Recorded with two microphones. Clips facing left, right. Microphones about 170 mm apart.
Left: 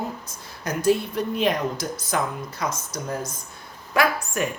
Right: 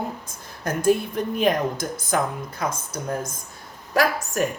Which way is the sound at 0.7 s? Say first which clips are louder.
Right 1 dB; 50° right (ahead or behind).